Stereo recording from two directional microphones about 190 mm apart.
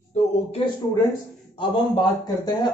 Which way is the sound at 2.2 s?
20° left (ahead or behind).